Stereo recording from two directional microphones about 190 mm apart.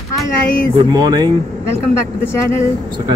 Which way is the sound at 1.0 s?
20° right (ahead or behind).